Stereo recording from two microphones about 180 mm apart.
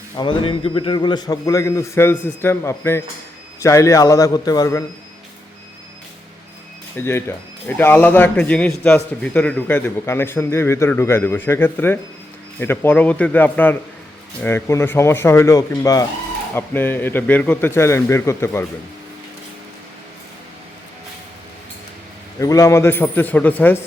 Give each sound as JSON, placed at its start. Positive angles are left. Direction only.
{"t": 0.2, "sound": "a man's voice", "side_deg": 25}
{"t": 6.9, "sound": "speech", "side_deg": 15}
{"t": 22.4, "sound": "speech", "side_deg": 20}